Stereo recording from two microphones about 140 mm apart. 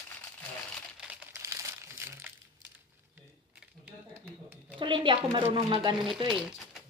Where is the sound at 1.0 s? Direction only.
20° right (ahead or behind).